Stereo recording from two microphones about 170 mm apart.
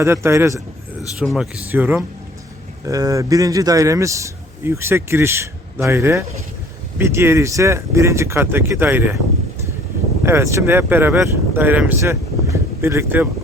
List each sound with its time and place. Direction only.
0.0 s a man's voice: 15° right (ahead or behind)
1.2 s a man's voice: 5° right (ahead or behind)
2.8 s a man's voice: 20° right (ahead or behind)
10.2 s speech: 15° right (ahead or behind)